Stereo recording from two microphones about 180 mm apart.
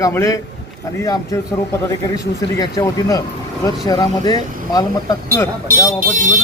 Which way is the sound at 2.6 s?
20° left (ahead or behind).